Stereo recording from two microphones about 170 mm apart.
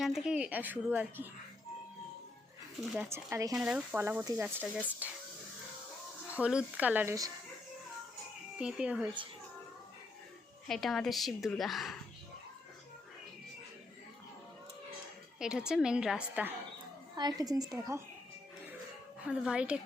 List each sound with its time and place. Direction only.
0.0 s speech: 5° right (ahead or behind)
2.9 s speech: 10° right (ahead or behind)
3.5 s speech: 5° right (ahead or behind)
6.3 s speech: 5° right (ahead or behind)
8.5 s speech: 5° right (ahead or behind)
10.7 s a woman's voice: centre (ahead or behind)
15.4 s a woman's voice: 5° right (ahead or behind)
17.2 s a woman's voice: 25° right (ahead or behind)
19.3 s speech: 5° right (ahead or behind)